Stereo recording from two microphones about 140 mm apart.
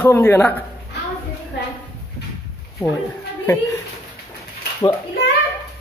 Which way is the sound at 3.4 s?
20° left (ahead or behind).